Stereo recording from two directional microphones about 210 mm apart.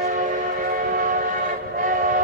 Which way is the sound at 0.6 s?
40° right (ahead or behind).